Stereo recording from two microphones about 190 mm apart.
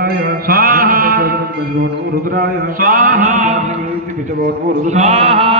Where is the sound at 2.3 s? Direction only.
50° right (ahead or behind).